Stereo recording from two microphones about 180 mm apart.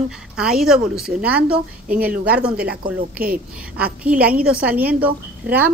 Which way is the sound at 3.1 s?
55° right (ahead or behind).